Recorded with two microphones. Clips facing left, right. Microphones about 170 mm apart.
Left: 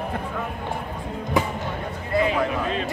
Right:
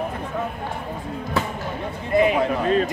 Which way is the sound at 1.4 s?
15° left (ahead or behind).